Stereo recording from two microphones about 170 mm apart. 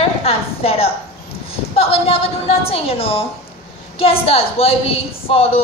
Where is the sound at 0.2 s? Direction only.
35° left (ahead or behind).